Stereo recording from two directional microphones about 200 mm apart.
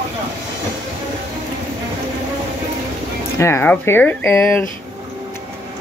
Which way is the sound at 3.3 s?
15° left (ahead or behind).